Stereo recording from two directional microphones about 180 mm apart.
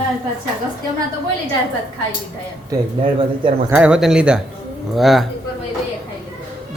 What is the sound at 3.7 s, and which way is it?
Speech, 5° right (ahead or behind).